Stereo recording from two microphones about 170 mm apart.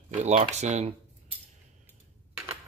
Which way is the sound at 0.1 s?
40° right (ahead or behind).